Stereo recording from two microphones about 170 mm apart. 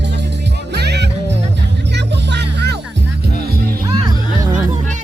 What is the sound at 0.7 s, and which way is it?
Music, 75° right (ahead or behind).